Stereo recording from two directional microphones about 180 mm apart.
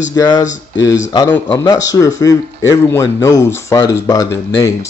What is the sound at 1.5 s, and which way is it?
Speech, 20° left (ahead or behind).